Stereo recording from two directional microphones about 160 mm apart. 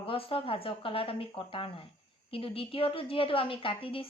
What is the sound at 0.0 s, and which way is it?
A woman's voice, 35° left (ahead or behind).